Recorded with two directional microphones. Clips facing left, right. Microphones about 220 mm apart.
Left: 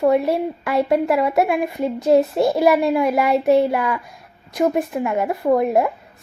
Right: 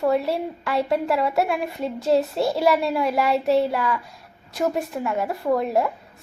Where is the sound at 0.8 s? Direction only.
55° left (ahead or behind).